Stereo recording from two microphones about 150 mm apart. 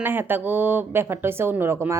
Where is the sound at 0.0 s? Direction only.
15° right (ahead or behind).